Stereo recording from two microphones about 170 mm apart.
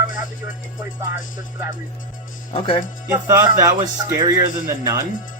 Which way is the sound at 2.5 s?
30° left (ahead or behind).